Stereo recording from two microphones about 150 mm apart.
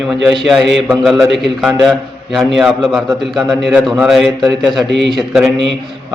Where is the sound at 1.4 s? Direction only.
5° right (ahead or behind).